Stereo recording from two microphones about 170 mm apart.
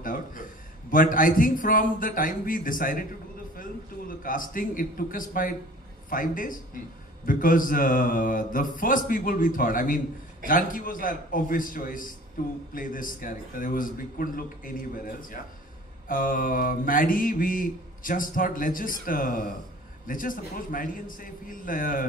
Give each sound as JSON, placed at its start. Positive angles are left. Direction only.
{"t": 0.0, "sound": "a man's voice", "side_deg": 50}
{"t": 4.2, "sound": "a man's voice", "side_deg": 55}